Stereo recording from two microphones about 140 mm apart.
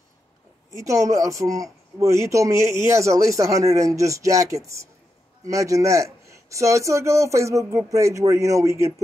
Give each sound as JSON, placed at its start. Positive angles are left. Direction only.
{"t": 0.7, "sound": "a man's voice", "side_deg": -20}